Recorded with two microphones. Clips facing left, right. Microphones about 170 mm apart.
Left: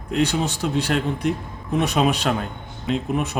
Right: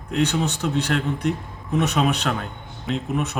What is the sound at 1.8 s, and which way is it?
Speech, 30° left (ahead or behind).